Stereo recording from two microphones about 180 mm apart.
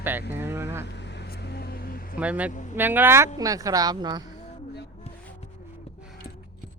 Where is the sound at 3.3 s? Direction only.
20° right (ahead or behind).